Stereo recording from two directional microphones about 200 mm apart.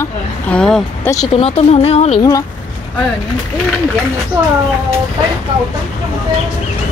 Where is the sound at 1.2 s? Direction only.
30° left (ahead or behind).